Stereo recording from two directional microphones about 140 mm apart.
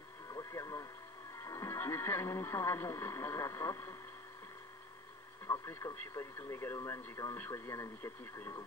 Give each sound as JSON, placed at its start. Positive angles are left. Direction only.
{"t": 0.3, "sound": "radio", "side_deg": 25}
{"t": 1.4, "sound": "speech", "side_deg": 25}
{"t": 5.5, "sound": "speech", "side_deg": 25}